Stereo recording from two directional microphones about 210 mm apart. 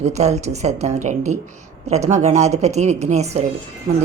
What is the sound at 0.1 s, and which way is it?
Speech, 30° right (ahead or behind).